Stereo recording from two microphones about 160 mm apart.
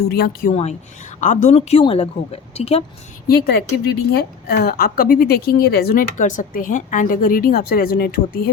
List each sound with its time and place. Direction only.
0.1 s a woman's voice: 70° left (ahead or behind)
0.5 s a woman's voice: 45° left (ahead or behind)
3.2 s a woman's voice: 70° left (ahead or behind)